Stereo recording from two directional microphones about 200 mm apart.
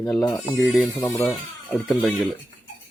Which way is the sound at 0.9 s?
15° left (ahead or behind).